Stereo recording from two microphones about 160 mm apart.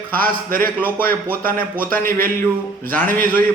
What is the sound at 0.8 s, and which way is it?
Speech, 10° left (ahead or behind).